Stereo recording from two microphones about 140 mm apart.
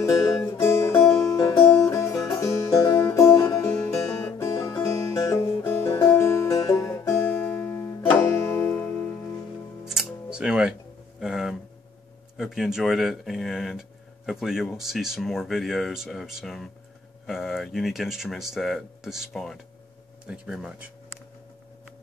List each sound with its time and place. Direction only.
0.0 s music: 20° left (ahead or behind)
1.3 s music: 30° left (ahead or behind); by 9.1 s 15° left (ahead or behind)
9.8 s music: 5° right (ahead or behind)
11.1 s a sound: 5° right (ahead or behind)
12.4 s speech: centre (ahead or behind)